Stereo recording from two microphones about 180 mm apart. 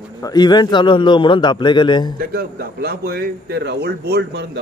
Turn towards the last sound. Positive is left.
turn(degrees=-65)  # may be behind; listen again after turning